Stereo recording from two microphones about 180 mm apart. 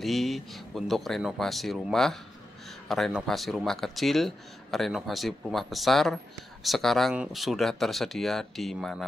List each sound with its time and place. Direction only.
0.0 s speech: centre (ahead or behind)